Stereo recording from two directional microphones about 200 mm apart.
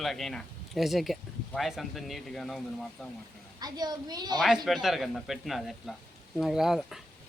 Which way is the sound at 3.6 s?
20° right (ahead or behind).